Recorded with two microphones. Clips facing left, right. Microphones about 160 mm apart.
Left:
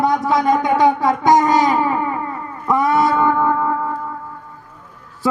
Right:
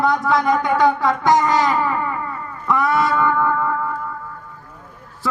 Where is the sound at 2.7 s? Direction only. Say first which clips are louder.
Left 3 dB; 20° left (ahead or behind).